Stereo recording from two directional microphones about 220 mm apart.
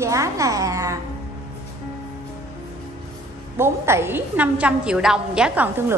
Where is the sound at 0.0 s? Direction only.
15° right (ahead or behind).